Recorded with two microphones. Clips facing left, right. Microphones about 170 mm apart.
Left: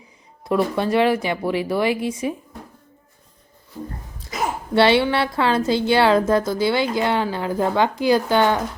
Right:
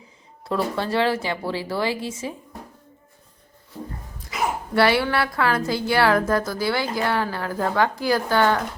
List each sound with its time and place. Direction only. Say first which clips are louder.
0.4 s speech: left 4 dB; 15° left (ahead or behind)
4.7 s a woman's voice: left 4 dB; 25° left (ahead or behind)